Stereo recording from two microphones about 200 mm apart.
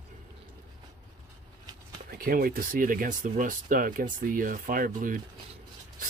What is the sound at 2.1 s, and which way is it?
Speech, 45° right (ahead or behind).